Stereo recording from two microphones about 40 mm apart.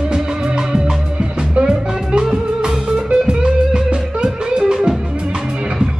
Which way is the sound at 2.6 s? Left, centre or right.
Right.